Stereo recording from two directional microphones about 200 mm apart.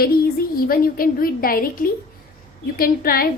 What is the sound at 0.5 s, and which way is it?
A woman's voice, 45° left (ahead or behind).